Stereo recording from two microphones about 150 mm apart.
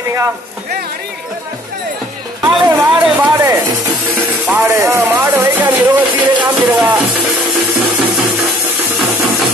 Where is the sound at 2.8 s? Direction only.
10° right (ahead or behind).